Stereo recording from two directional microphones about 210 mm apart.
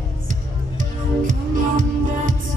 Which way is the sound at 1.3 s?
40° right (ahead or behind).